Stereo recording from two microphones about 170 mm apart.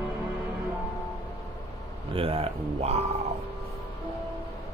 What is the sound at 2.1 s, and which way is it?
Speech, 35° right (ahead or behind).